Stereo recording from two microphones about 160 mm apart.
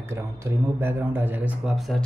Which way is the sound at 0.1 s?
15° right (ahead or behind).